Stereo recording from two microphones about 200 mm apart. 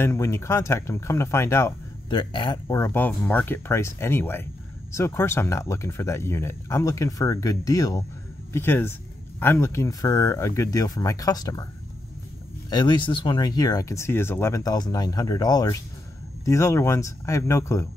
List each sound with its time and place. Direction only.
0.0 s speech: 15° left (ahead or behind)
12.6 s speech: 20° left (ahead or behind)